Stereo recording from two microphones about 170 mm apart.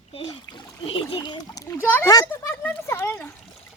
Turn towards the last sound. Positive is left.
turn(degrees=10)  # may be behind; listen again after turning